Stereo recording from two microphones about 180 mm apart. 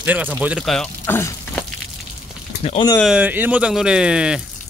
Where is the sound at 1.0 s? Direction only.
10° left (ahead or behind).